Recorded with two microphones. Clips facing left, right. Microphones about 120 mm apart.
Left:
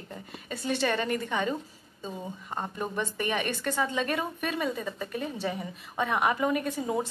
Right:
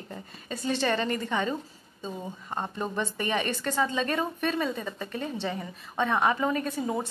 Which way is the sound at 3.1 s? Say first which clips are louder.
Right 1 dB; 15° left (ahead or behind).